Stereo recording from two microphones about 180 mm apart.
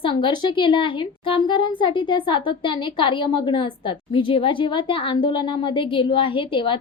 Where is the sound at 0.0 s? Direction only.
25° left (ahead or behind).